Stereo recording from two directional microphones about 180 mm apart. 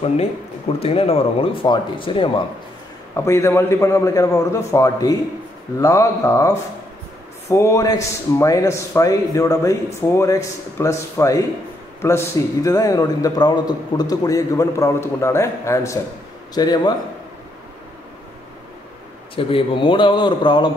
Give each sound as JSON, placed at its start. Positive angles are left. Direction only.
{"t": 0.7, "sound": "a man's voice", "side_deg": 35}
{"t": 3.2, "sound": "a man's voice", "side_deg": 15}
{"t": 19.3, "sound": "a man's voice", "side_deg": 30}